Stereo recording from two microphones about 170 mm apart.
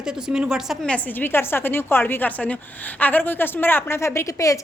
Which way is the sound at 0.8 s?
10° left (ahead or behind).